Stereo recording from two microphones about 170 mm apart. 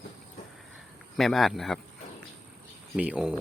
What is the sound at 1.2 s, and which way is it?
Speech, centre (ahead or behind).